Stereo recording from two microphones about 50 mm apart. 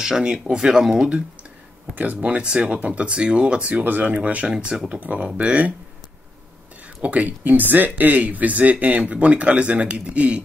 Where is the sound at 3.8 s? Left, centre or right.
Right.